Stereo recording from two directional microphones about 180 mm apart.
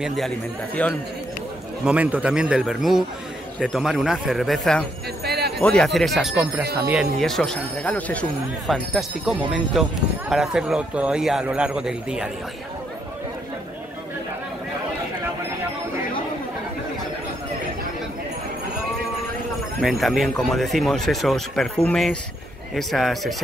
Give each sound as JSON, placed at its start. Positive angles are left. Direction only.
{"t": 0.0, "sound": "speech", "side_deg": 0}
{"t": 1.9, "sound": "speech", "side_deg": -10}
{"t": 5.2, "sound": "a sound", "side_deg": -60}
{"t": 5.6, "sound": "speech", "side_deg": 5}
{"t": 19.8, "sound": "speech", "side_deg": 0}